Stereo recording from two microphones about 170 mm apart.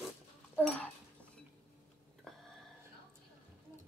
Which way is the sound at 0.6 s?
10° left (ahead or behind).